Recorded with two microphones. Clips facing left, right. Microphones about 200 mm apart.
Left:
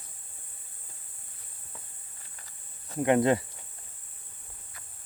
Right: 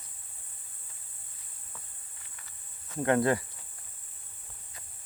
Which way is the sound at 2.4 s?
35° left (ahead or behind).